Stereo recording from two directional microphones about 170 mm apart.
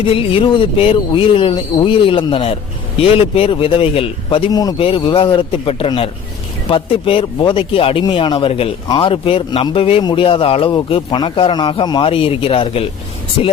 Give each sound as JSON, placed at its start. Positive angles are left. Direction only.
{"t": 0.0, "sound": "a man's voice", "side_deg": 35}